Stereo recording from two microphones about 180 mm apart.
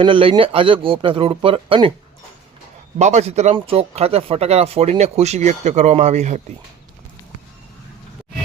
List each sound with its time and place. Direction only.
0.0 s speech: 30° right (ahead or behind)
3.0 s speech: 40° right (ahead or behind)